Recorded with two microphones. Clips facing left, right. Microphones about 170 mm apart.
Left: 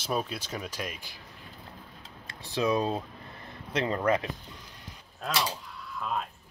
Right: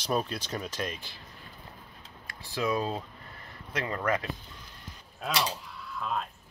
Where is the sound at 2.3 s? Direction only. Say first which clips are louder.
Left 3 dB; 20° left (ahead or behind).